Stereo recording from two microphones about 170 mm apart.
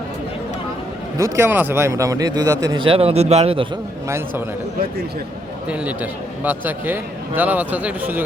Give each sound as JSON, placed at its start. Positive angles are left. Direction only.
{"t": 1.2, "sound": "speech", "side_deg": -15}
{"t": 5.6, "sound": "a man's voice", "side_deg": -5}